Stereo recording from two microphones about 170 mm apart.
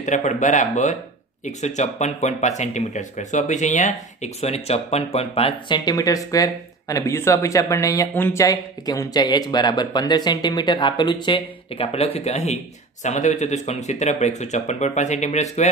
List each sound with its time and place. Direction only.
0.0 s speech: 45° left (ahead or behind)